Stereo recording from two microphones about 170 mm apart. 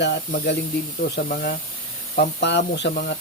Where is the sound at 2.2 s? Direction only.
90° left.